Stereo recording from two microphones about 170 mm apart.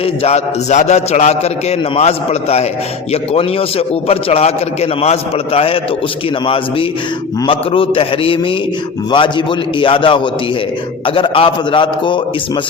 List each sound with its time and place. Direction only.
0.0 s a man's voice: 35° left (ahead or behind)